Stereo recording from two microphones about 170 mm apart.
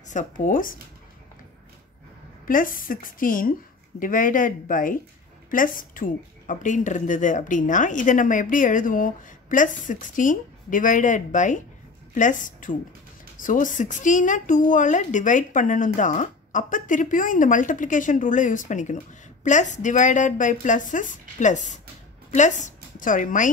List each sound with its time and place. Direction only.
0.1 s speech: 50° left (ahead or behind)
2.4 s a woman's voice: 55° left (ahead or behind)
22.9 s speech: 50° left (ahead or behind)